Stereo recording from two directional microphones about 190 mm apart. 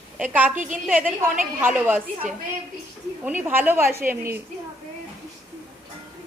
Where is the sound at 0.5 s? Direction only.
45° right (ahead or behind).